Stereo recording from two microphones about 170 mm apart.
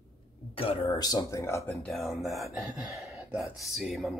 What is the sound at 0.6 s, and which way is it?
Speech, 35° left (ahead or behind).